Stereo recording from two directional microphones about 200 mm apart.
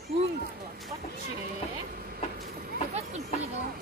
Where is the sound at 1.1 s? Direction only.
45° right (ahead or behind).